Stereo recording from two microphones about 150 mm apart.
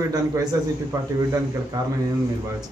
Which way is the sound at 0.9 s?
25° right (ahead or behind).